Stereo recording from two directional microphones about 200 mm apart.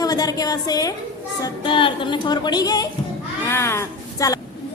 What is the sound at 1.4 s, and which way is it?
Music, 20° left (ahead or behind).